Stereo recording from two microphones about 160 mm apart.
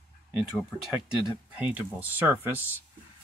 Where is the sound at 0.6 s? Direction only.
5° right (ahead or behind).